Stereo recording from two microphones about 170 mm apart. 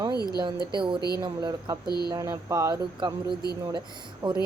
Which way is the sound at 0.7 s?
30° right (ahead or behind).